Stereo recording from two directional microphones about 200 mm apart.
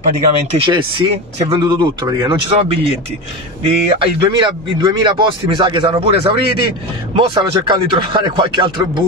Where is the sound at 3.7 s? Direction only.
25° right (ahead or behind).